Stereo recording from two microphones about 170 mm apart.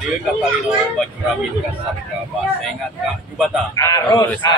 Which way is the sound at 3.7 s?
20° left (ahead or behind).